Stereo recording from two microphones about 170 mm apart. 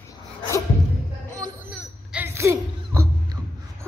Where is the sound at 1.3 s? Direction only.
20° right (ahead or behind).